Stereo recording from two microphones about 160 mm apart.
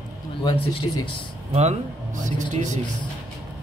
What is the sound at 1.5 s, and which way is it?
Speech, 40° right (ahead or behind).